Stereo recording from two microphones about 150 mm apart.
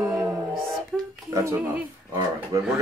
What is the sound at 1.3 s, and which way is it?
Speech, 20° right (ahead or behind).